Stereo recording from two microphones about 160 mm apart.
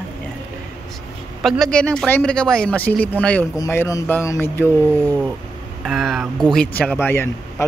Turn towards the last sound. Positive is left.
turn(degrees=15)  # may be behind; listen again after turning